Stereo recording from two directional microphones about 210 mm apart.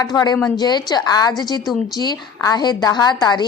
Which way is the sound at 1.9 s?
20° left (ahead or behind).